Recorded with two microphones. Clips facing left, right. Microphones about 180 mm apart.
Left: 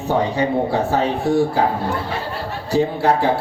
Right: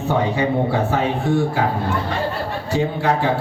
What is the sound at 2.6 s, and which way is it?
Speech, 40° left (ahead or behind).